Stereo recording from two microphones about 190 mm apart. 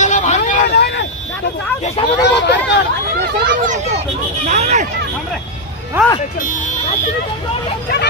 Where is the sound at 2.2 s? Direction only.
65° left (ahead or behind).